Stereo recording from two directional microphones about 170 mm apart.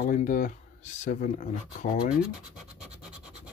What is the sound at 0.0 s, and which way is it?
Speech, 55° left (ahead or behind).